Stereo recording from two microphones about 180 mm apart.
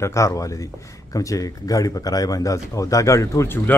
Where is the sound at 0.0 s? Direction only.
15° left (ahead or behind).